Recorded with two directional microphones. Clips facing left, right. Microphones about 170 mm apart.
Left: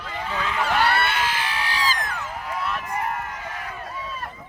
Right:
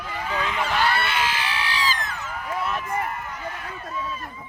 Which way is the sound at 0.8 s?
55° left (ahead or behind).